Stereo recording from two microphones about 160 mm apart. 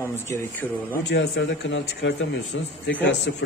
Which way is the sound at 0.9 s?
90° left.